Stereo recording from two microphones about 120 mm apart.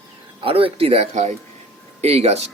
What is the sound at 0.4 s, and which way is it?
Speech, 50° right (ahead or behind).